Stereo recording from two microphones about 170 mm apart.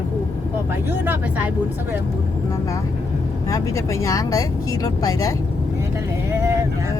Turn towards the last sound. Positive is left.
turn(degrees=20)  # may be behind; listen again after turning